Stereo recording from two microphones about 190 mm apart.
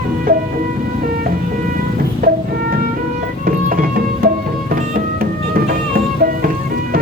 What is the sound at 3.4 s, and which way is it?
Music, 50° right (ahead or behind).